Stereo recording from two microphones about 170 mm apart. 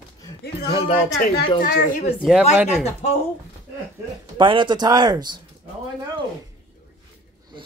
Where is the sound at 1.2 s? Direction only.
70° left (ahead or behind).